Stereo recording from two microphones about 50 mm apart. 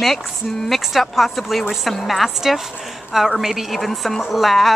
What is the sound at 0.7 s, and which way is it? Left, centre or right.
A woman's voice, centre.